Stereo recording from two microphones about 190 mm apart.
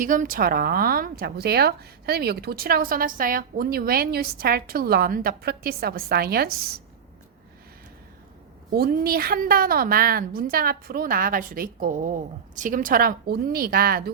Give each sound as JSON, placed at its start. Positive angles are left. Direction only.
{"t": 0.0, "sound": "a woman's voice", "side_deg": -45}
{"t": 8.7, "sound": "a woman's voice", "side_deg": -55}